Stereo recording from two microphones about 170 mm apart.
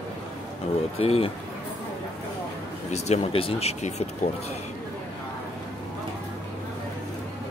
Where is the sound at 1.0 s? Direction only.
35° left (ahead or behind).